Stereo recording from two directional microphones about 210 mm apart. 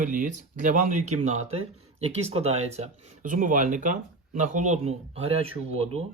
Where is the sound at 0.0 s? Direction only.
40° right (ahead or behind).